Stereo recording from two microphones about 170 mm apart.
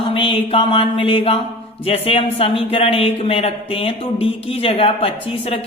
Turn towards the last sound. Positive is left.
turn(degrees=35)  # may be behind; listen again after turning